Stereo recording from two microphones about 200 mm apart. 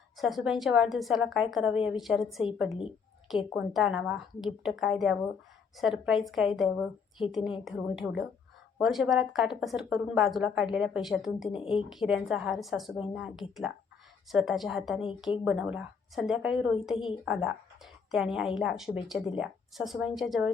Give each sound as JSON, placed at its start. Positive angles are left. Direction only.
{"t": 0.2, "sound": "speech", "side_deg": 0}
{"t": 11.4, "sound": "a woman's voice", "side_deg": 25}
{"t": 11.7, "sound": "speech", "side_deg": 0}